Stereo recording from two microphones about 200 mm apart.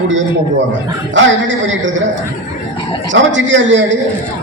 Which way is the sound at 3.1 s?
70° right (ahead or behind).